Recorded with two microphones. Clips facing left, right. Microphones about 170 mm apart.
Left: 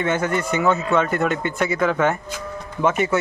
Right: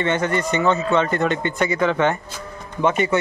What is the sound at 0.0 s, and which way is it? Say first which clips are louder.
Speech: right 1 dB; 5° left (ahead or behind).